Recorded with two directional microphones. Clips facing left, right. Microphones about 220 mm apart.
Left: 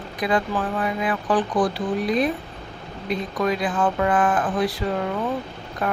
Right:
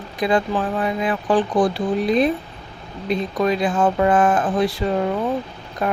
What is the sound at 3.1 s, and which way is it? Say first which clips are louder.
Speech: right 4 dB; 25° right (ahead or behind).